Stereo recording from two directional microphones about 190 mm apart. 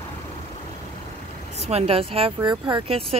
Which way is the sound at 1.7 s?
30° right (ahead or behind).